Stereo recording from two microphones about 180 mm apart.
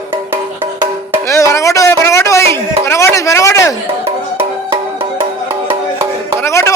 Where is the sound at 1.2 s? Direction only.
15° left (ahead or behind).